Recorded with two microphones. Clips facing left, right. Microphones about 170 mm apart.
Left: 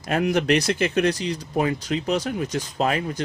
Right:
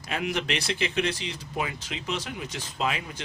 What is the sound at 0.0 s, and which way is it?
Speech, 45° left (ahead or behind).